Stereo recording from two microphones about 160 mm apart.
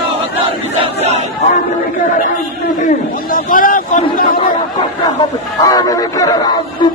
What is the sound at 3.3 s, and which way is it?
Boat, 60° left (ahead or behind).